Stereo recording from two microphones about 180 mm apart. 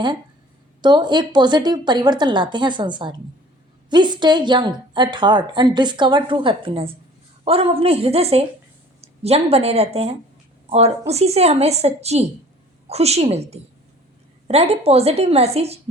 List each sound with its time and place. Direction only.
0.8 s a woman's voice: 25° right (ahead or behind)